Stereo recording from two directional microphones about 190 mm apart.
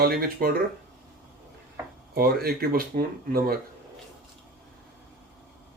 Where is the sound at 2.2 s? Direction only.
50° right (ahead or behind).